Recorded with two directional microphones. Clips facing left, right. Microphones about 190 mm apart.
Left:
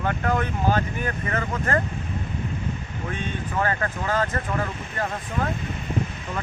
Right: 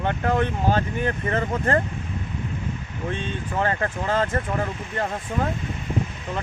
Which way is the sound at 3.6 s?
25° right (ahead or behind).